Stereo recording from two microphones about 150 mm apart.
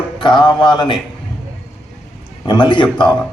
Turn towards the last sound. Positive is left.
turn(degrees=30)  # may be behind; listen again after turning